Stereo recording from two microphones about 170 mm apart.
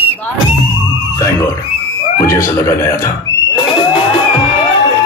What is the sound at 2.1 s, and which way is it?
Speech, 15° left (ahead or behind).